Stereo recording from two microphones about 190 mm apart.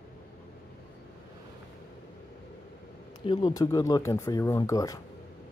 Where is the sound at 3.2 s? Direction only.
20° left (ahead or behind).